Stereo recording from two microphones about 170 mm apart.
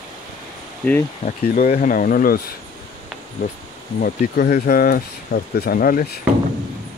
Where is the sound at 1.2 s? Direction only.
55° left (ahead or behind).